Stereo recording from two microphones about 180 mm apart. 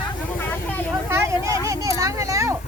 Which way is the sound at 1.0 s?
15° right (ahead or behind).